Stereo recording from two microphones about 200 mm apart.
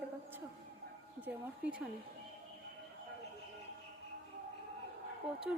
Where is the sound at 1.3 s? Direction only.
60° right (ahead or behind).